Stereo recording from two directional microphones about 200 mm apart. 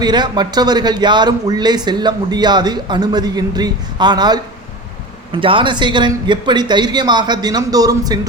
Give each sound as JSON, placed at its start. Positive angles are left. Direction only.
{"t": 0.0, "sound": "speech", "side_deg": -20}